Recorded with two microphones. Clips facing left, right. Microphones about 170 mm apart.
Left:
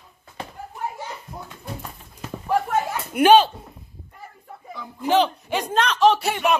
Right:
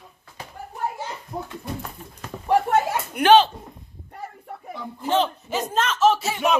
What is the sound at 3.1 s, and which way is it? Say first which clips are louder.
Speech: left 1 dB; 10° left (ahead or behind).